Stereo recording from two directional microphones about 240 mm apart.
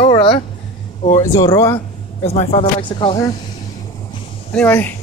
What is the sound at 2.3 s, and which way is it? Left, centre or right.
Speech, left.